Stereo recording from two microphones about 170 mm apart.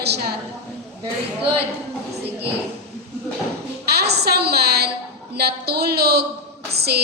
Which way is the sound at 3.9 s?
75° right (ahead or behind).